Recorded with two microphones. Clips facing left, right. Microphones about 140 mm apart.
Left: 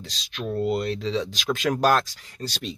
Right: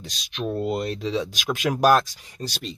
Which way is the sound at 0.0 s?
15° right (ahead or behind).